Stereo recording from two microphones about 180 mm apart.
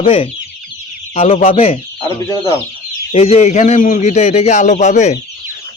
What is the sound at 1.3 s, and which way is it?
Speech, 35° left (ahead or behind).